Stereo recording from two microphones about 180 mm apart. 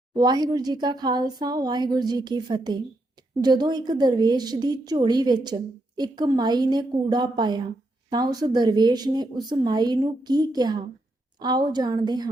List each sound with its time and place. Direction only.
0.1 s a woman's voice: 20° right (ahead or behind)